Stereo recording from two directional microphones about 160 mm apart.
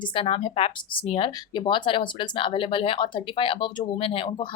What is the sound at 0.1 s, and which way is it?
Speech, 35° left (ahead or behind).